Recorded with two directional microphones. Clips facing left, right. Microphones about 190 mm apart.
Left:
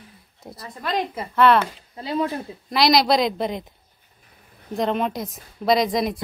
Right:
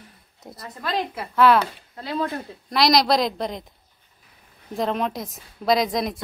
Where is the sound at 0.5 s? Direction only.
Centre (ahead or behind).